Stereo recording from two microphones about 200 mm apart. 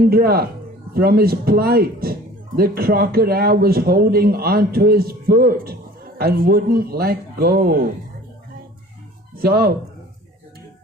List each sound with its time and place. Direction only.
0.0 s a man's voice: 50° right (ahead or behind)
9.4 s a man's voice: 50° right (ahead or behind)